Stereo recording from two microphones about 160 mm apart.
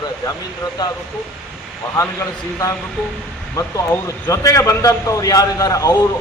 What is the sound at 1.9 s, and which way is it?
A man's voice, 20° left (ahead or behind).